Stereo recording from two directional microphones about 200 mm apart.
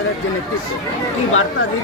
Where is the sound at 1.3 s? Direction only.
85° left.